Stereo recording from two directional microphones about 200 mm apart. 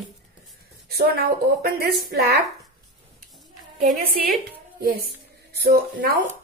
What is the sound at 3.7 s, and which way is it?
Speech, 45° right (ahead or behind).